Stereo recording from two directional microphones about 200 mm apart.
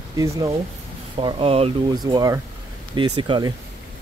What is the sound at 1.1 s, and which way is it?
Speech, 30° right (ahead or behind).